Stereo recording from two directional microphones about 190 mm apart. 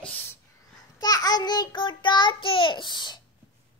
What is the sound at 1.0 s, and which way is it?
Child singing, 20° left (ahead or behind).